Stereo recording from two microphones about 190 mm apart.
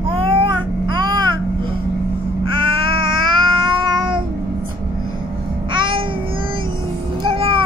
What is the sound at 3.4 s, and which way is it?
Cat, 25° right (ahead or behind).